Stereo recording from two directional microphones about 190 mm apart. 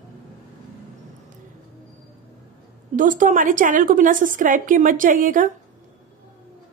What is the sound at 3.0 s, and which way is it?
A woman's voice, 45° right (ahead or behind).